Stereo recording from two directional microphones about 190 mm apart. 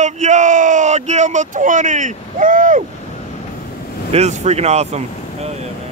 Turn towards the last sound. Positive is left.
turn(degrees=-35)  # may be behind; listen again after turning